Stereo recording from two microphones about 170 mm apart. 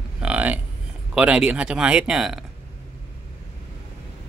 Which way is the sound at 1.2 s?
5° right (ahead or behind).